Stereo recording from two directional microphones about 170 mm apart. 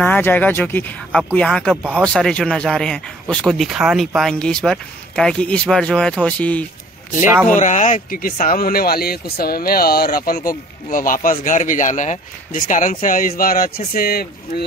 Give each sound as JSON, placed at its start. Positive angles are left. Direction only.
{"t": 0.0, "sound": "speech", "side_deg": 10}
{"t": 1.8, "sound": "speech", "side_deg": -5}
{"t": 2.0, "sound": "speech", "side_deg": 5}
{"t": 7.4, "sound": "speech", "side_deg": 45}